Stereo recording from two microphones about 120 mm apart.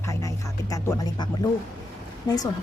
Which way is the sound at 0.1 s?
25° left (ahead or behind).